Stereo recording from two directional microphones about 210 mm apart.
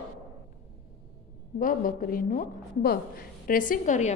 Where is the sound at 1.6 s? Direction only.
40° left (ahead or behind).